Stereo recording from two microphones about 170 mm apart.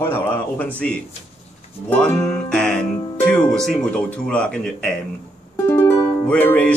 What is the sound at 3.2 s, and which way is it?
Speech, 5° left (ahead or behind).